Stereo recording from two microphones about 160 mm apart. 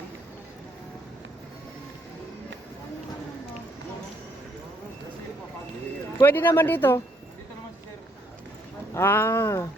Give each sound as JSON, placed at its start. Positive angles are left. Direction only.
{"t": 6.2, "sound": "speech", "side_deg": 10}
{"t": 9.0, "sound": "speech", "side_deg": 15}